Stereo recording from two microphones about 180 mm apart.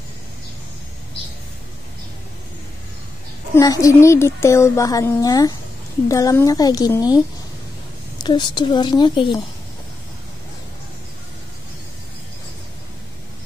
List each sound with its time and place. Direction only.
3.5 s a woman's voice: 20° left (ahead or behind)
8.2 s a woman's voice: 25° left (ahead or behind)